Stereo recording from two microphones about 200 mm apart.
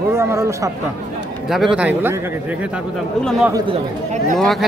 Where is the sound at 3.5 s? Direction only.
25° right (ahead or behind).